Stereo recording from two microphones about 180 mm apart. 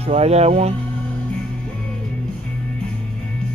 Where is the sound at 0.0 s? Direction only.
35° right (ahead or behind).